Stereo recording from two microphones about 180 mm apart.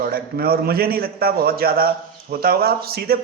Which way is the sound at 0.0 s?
55° right (ahead or behind).